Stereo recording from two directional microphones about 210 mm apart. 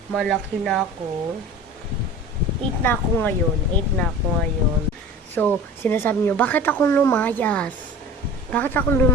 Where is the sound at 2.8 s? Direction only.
10° left (ahead or behind).